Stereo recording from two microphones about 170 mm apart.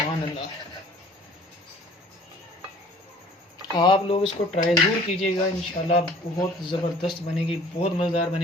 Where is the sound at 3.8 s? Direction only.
30° left (ahead or behind).